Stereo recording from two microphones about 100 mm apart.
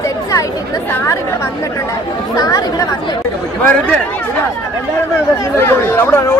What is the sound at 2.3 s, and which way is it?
Speech, 35° left (ahead or behind).